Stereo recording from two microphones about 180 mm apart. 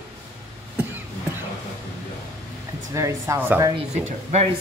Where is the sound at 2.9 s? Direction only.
15° right (ahead or behind).